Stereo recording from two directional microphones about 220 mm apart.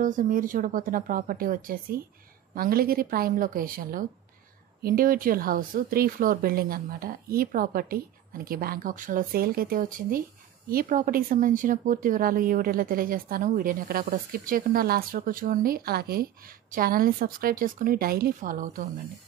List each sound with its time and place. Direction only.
0.0 s speech: 35° right (ahead or behind)